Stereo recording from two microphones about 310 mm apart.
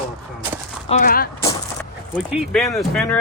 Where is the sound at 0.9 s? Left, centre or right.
Left.